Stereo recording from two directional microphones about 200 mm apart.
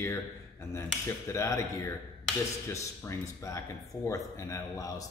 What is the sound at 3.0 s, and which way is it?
Speech, 15° left (ahead or behind).